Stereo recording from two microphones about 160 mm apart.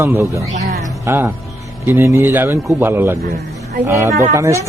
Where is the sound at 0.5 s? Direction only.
45° right (ahead or behind).